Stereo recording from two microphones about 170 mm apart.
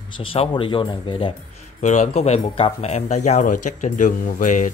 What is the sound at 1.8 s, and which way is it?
Speech, 45° left (ahead or behind).